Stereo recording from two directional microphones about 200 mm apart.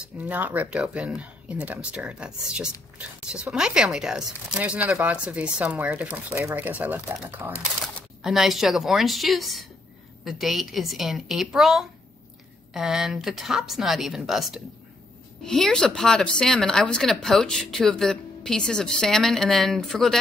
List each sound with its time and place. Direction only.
0.0 s speech: 10° right (ahead or behind)